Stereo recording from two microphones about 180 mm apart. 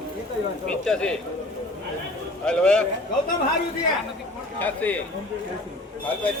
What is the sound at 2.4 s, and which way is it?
Speech, 5° left (ahead or behind).